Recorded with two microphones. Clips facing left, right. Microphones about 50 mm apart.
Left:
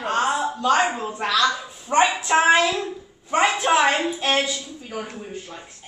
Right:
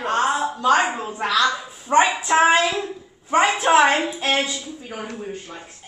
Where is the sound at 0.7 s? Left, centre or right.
Centre.